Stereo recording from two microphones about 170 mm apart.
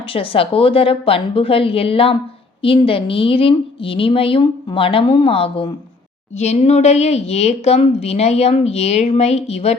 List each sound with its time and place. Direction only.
0.1 s a woman's voice: 35° left (ahead or behind)